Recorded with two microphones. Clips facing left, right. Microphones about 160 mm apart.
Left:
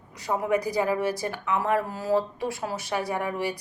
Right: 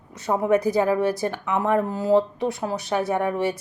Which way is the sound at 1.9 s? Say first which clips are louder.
Right 6 dB; 20° right (ahead or behind).